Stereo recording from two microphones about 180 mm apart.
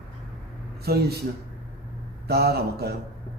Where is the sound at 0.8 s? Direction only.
60° right (ahead or behind).